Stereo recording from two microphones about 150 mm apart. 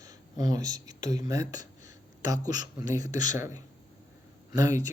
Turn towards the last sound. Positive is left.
turn(degrees=-20)  # may be behind; listen again after turning